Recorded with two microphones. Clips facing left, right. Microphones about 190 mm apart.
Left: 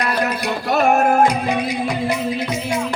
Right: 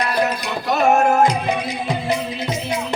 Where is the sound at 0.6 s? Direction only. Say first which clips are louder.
Even; 55° left (ahead or behind).